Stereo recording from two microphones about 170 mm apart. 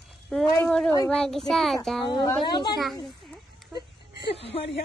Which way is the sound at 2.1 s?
20° left (ahead or behind).